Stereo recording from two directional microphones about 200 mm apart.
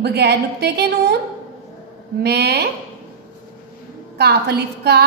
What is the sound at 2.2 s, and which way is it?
Speech, 55° right (ahead or behind).